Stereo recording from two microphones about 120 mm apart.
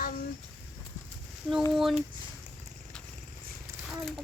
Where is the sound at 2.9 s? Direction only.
5° left (ahead or behind).